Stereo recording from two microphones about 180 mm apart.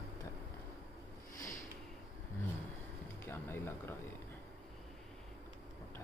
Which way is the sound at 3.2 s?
15° left (ahead or behind).